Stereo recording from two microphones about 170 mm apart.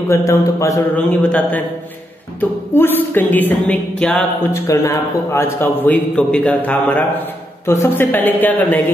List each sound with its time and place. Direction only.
0.1 s a man's voice: 15° left (ahead or behind)
2.7 s a man's voice: 10° left (ahead or behind)